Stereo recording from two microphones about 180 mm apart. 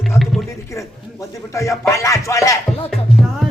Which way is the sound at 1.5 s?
15° left (ahead or behind).